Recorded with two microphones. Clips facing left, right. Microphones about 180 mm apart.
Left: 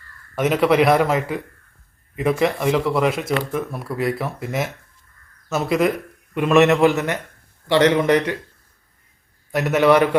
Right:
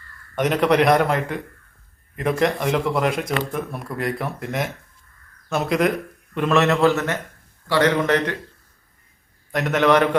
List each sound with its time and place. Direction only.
0.3 s speech: 5° left (ahead or behind)
6.3 s a man's voice: 15° left (ahead or behind)
9.5 s a man's voice: 10° left (ahead or behind)